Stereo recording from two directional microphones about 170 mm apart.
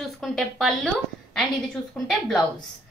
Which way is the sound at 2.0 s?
Centre (ahead or behind).